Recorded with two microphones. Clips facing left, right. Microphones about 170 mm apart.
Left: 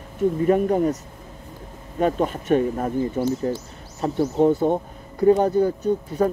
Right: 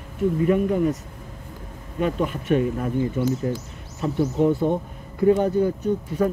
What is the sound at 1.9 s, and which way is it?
Speech, 40° left (ahead or behind).